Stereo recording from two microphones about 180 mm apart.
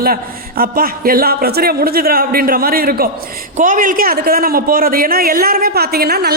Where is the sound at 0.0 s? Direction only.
55° right (ahead or behind).